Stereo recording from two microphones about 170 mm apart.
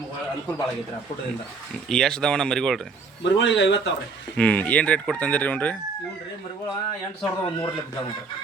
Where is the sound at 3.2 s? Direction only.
90° left.